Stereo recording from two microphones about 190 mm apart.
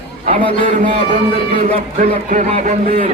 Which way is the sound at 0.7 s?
40° right (ahead or behind).